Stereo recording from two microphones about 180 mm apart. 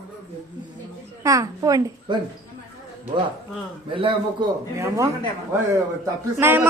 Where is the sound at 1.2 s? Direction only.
20° right (ahead or behind).